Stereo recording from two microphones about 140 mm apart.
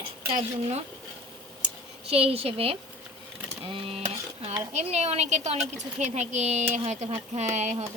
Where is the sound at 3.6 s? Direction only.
40° right (ahead or behind).